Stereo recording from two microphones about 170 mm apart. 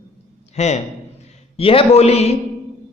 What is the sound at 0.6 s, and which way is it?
A man's voice, 40° left (ahead or behind).